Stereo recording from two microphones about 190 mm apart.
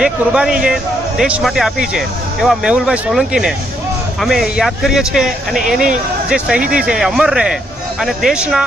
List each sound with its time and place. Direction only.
0.0 s speech: 5° right (ahead or behind)